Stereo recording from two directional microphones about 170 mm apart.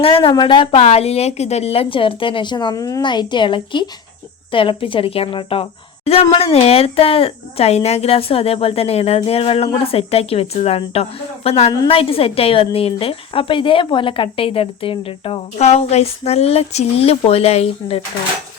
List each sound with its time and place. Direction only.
0.0 s a woman's voice: 30° left (ahead or behind)